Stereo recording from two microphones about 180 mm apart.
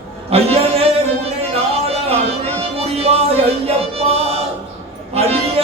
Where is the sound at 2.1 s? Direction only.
35° right (ahead or behind).